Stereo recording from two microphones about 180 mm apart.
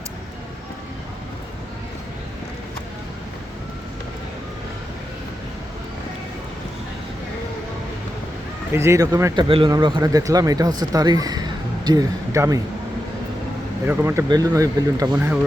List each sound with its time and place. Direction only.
8.7 s speech: 15° right (ahead or behind)
13.8 s speech: 15° right (ahead or behind)